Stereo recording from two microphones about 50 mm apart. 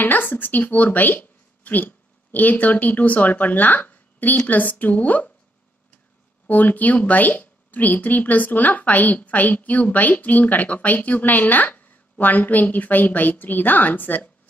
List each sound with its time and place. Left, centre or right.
0.0 s a woman's voice: left
6.4 s a woman's voice: left